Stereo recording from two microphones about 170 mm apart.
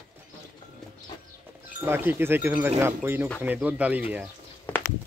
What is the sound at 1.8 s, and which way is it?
Speech, 10° right (ahead or behind).